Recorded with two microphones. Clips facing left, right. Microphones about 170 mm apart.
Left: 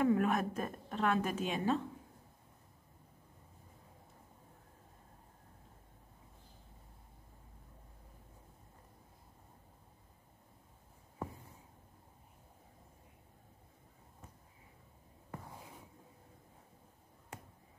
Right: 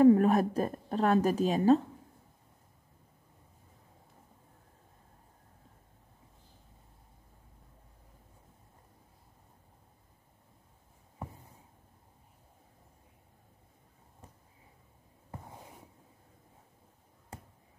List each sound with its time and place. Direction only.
0.0 s a woman's voice: 35° right (ahead or behind)